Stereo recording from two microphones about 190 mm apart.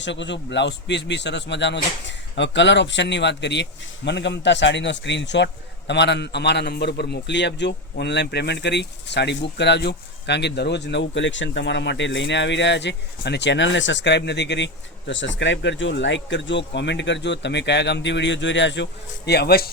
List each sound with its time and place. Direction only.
0.0 s a man's voice: 70° left (ahead or behind); by 19.7 s 55° left (ahead or behind)